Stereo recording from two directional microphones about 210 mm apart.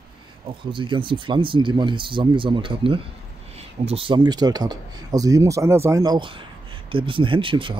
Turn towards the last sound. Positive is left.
turn(degrees=-25)  # may be behind; listen again after turning